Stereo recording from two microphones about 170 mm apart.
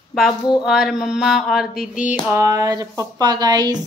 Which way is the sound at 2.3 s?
20° right (ahead or behind).